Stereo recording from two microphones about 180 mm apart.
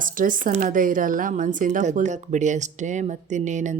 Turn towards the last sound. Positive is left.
turn(degrees=-45)  # may be behind; listen again after turning